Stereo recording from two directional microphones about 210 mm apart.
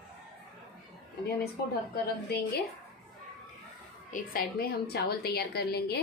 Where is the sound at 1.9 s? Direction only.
50° left (ahead or behind).